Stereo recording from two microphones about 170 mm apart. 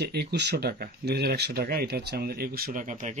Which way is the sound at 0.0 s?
75° right (ahead or behind).